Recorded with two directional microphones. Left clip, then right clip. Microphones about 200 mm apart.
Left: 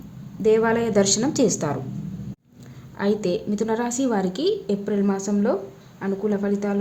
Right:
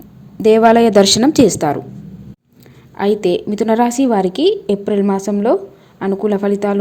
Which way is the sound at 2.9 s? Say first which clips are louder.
Right 8 dB; 30° right (ahead or behind).